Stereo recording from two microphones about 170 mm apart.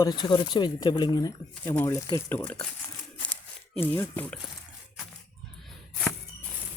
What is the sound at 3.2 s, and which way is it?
Tearing, 5° left (ahead or behind).